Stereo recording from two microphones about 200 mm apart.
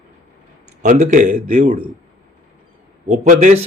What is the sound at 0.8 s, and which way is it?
A man's voice, 35° right (ahead or behind).